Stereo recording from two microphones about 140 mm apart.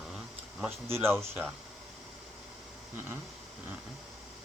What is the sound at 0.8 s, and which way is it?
Speech, 15° right (ahead or behind).